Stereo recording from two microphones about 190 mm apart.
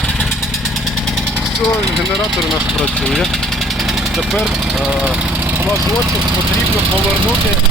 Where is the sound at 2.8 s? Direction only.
5° left (ahead or behind); by 6.1 s 15° right (ahead or behind).